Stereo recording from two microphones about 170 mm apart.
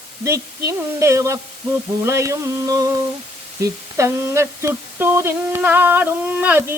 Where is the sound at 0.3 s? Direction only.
15° right (ahead or behind).